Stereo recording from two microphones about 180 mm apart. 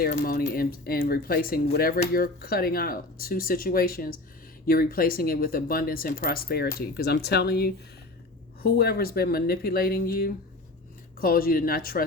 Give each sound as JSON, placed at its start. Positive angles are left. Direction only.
{"t": 0.0, "sound": "speech", "side_deg": 50}